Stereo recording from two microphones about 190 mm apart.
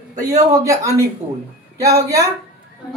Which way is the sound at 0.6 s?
15° right (ahead or behind).